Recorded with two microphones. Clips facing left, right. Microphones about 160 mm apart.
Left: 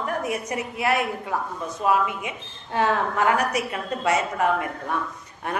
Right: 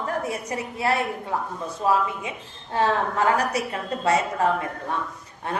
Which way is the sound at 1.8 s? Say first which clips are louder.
Even; 30° right (ahead or behind).